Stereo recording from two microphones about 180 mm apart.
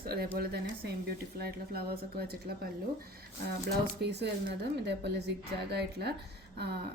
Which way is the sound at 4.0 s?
65° right (ahead or behind).